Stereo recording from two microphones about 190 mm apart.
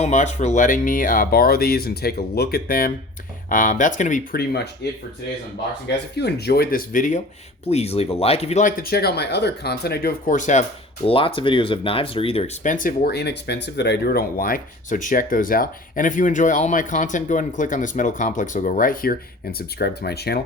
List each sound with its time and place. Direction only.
0.0 s speech: 40° left (ahead or behind); by 4.9 s 60° left (ahead or behind)
6.1 s speech: 60° left (ahead or behind); by 7.2 s 45° left (ahead or behind)
7.7 s speech: 35° left (ahead or behind)
8.8 s speech: 55° left (ahead or behind); by 12.7 s 30° left (ahead or behind)
12.7 s speech: 45° left (ahead or behind)